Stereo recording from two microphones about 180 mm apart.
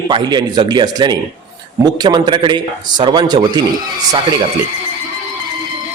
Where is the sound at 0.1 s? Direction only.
25° right (ahead or behind).